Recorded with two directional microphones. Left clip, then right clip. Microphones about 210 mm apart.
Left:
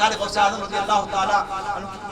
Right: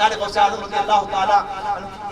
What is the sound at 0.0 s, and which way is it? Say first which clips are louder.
A man's voice: right 2 dB; 20° right (ahead or behind).